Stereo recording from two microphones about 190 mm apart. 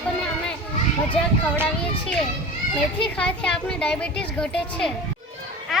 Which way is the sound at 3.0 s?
5° left (ahead or behind).